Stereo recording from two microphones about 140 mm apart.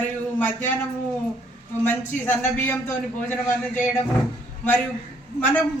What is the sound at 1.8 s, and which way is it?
Speech, 15° left (ahead or behind).